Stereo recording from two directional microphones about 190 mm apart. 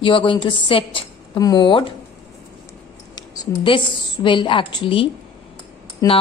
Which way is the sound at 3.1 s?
20° left (ahead or behind).